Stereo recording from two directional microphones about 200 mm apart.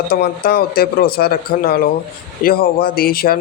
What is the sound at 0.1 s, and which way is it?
Speech, 50° left (ahead or behind).